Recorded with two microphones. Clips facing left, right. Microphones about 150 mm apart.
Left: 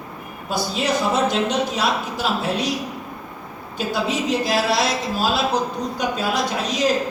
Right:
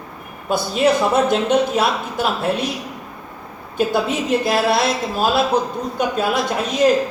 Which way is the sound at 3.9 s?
55° right (ahead or behind).